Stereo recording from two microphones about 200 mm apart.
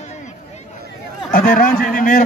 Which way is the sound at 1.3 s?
45° left (ahead or behind).